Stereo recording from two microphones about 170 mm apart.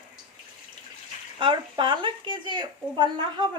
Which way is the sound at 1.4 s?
30° right (ahead or behind).